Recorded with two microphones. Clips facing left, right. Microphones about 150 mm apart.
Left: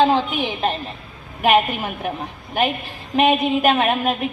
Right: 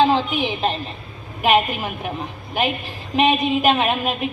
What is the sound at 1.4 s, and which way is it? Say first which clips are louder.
Speech: left 1 dB; 50° left (ahead or behind).